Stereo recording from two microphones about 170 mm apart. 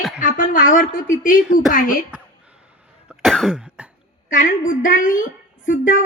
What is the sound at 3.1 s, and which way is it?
Cough, centre (ahead or behind).